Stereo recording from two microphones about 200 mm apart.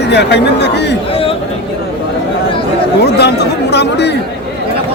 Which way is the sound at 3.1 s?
55° left (ahead or behind).